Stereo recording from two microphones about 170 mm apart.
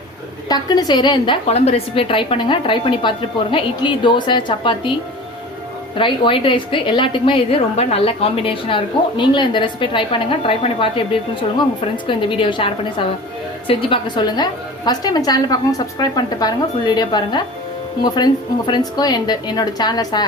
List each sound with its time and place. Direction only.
0.4 s a woman's voice: 25° left (ahead or behind)
6.0 s a woman's voice: 30° left (ahead or behind)
12.0 s a woman's voice: 30° left (ahead or behind)